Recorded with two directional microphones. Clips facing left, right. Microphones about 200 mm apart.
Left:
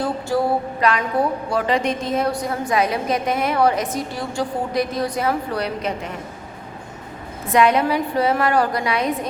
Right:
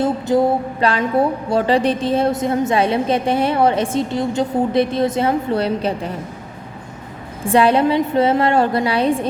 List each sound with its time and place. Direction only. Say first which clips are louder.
0.0 s a woman's voice: right 5 dB; 20° right (ahead or behind)
7.4 s a woman's voice: right 3 dB; 30° right (ahead or behind)